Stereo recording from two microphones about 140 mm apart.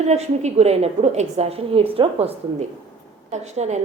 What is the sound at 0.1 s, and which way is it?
A woman's voice, 50° right (ahead or behind).